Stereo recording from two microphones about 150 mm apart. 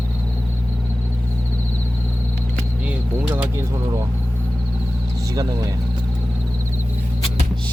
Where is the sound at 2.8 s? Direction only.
10° right (ahead or behind).